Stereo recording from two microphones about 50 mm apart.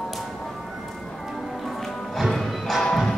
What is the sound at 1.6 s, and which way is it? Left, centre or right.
Music, centre.